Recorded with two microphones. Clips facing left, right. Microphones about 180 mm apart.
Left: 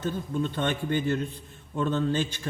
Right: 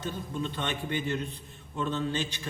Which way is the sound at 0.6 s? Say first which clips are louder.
Left 6 dB; 45° left (ahead or behind).